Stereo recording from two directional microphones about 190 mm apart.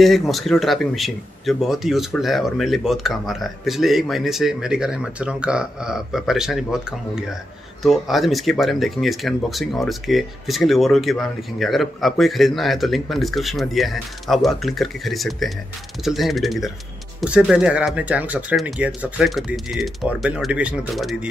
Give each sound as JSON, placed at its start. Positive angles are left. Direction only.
{"t": 0.0, "sound": "speech", "side_deg": 0}